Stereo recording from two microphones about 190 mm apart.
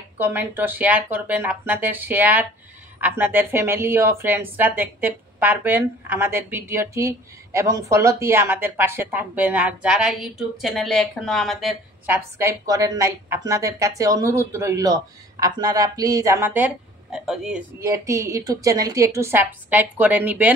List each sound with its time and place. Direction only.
0.2 s speech: 10° right (ahead or behind)
12.1 s speech: 15° right (ahead or behind)
17.7 s speech: 15° right (ahead or behind)